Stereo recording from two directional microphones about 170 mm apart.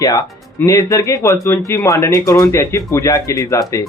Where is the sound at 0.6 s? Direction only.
20° left (ahead or behind).